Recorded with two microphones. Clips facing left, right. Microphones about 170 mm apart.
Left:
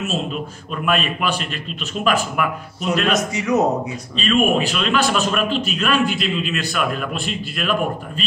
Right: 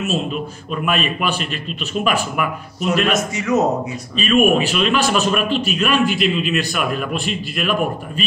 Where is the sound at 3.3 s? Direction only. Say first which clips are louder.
Right 1 dB; 15° left (ahead or behind).